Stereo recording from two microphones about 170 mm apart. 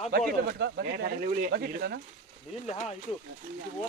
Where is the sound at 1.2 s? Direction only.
55° right (ahead or behind).